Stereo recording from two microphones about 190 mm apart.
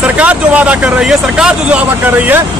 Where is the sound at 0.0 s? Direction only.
5° right (ahead or behind).